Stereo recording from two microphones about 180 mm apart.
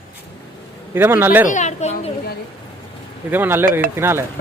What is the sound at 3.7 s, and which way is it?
Speech, 50° right (ahead or behind).